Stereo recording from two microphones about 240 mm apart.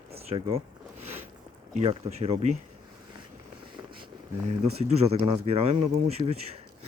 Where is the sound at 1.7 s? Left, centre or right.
Right.